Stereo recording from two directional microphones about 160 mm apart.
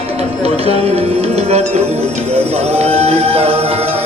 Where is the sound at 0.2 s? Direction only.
40° right (ahead or behind).